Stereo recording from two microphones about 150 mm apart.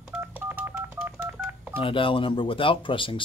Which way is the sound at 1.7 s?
35° left (ahead or behind).